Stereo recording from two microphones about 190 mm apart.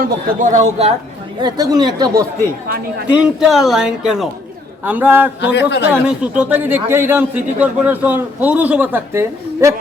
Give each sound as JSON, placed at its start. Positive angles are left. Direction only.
{"t": 0.0, "sound": "a man's voice", "side_deg": -40}
{"t": 1.4, "sound": "speech", "side_deg": -20}
{"t": 3.1, "sound": "speech", "side_deg": -5}
{"t": 5.5, "sound": "a man's voice", "side_deg": 65}
{"t": 5.9, "sound": "speech", "side_deg": -5}